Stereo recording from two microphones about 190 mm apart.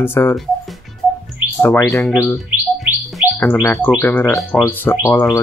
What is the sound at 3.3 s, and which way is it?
Speech, 10° left (ahead or behind).